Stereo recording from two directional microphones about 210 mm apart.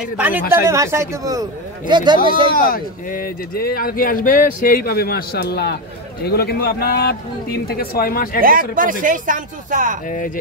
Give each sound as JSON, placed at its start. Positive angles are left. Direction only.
{"t": 0.0, "sound": "speech", "side_deg": -5}
{"t": 2.5, "sound": "speech", "side_deg": 45}
{"t": 8.4, "sound": "speech", "side_deg": -40}
{"t": 10.0, "sound": "speech", "side_deg": 40}